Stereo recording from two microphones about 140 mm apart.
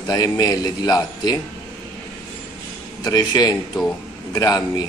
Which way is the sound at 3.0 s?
30° left (ahead or behind).